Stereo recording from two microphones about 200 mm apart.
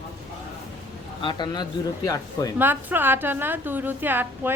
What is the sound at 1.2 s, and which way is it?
A man's voice, 25° left (ahead or behind).